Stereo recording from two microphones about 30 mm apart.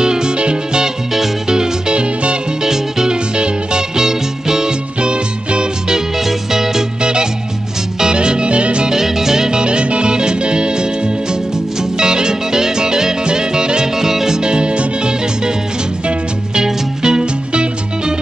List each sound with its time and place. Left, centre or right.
0.0 s music: right
3.3 s music: right
3.9 s music: centre
5.0 s music: right
6.1 s music: centre
7.0 s music: right
8.8 s music: centre
13.9 s music: centre
16.5 s music: right